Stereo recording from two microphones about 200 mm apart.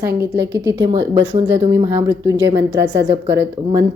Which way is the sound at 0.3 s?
60° right (ahead or behind).